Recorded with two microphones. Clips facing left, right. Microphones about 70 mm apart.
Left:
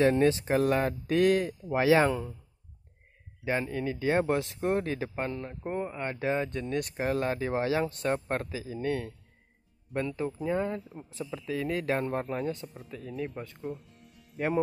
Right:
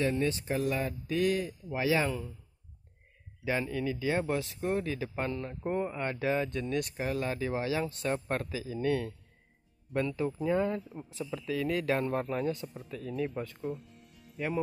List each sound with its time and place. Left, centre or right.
0.0 s speech: left
3.4 s speech: left
5.1 s speech: left
5.6 s speech: centre
6.1 s speech: left
6.8 s speech: left
10.3 s speech: centre
11.2 s speech: left
13.6 s music: centre